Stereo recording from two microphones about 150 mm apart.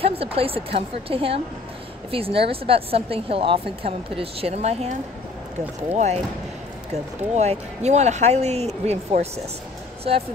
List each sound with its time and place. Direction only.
0.0 s speech: 40° right (ahead or behind)
5.9 s speech: 50° right (ahead or behind)